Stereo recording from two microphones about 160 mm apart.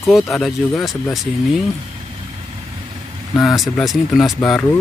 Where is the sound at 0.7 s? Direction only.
20° left (ahead or behind).